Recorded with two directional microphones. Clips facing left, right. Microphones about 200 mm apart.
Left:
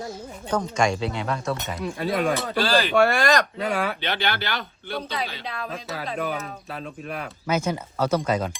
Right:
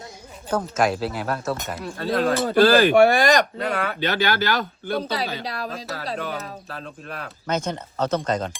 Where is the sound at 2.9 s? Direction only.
15° right (ahead or behind).